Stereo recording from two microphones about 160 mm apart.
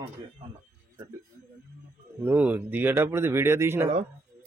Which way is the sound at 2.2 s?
10° right (ahead or behind).